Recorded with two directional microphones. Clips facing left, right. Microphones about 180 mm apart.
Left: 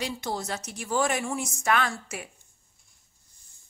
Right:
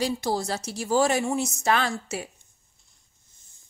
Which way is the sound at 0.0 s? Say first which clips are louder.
Right 6 dB; 35° right (ahead or behind).